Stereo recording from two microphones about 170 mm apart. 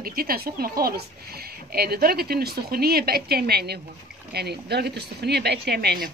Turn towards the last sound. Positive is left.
turn(degrees=-70)  # may be behind; listen again after turning